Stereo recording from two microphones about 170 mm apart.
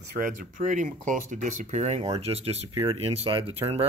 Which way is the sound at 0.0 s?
70° right (ahead or behind).